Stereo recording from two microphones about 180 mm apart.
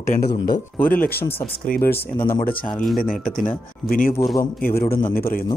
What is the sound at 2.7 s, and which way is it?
Speech, 5° left (ahead or behind).